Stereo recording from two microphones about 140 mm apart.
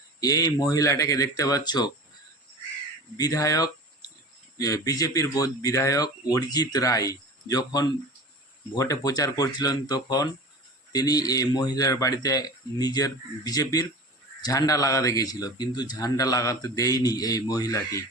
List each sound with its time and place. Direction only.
0.2 s speech: 25° left (ahead or behind)
3.2 s speech: 25° left (ahead or behind)